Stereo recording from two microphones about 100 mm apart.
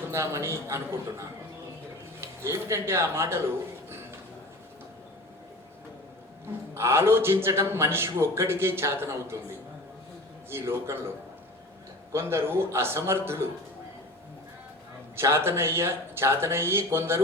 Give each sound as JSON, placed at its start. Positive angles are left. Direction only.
{"t": 0.1, "sound": "a man's voice", "side_deg": -25}
{"t": 2.4, "sound": "a man's voice", "side_deg": -25}
{"t": 6.7, "sound": "a man's voice", "side_deg": -25}
{"t": 10.5, "sound": "a man's voice", "side_deg": -25}
{"t": 12.1, "sound": "a man's voice", "side_deg": -25}
{"t": 15.1, "sound": "a man's voice", "side_deg": -25}